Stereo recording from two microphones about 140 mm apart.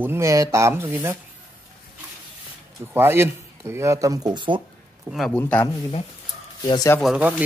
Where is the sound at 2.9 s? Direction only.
15° right (ahead or behind); by 4.6 s 35° right (ahead or behind).